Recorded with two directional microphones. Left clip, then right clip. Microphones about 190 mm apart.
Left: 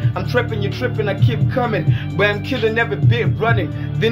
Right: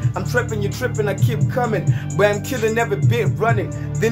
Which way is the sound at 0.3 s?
20° right (ahead or behind).